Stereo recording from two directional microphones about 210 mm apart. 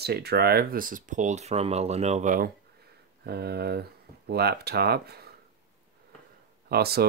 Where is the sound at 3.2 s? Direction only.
50° right (ahead or behind).